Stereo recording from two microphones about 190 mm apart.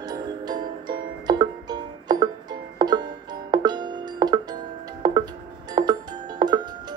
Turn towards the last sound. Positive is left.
turn(degrees=-20)  # may be behind; listen again after turning